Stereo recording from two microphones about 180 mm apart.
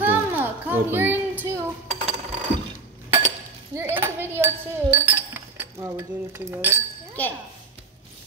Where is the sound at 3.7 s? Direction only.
10° right (ahead or behind).